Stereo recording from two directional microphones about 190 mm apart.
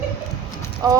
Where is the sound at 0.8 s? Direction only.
20° right (ahead or behind).